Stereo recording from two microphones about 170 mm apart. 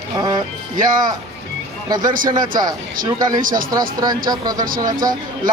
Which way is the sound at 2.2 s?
25° right (ahead or behind).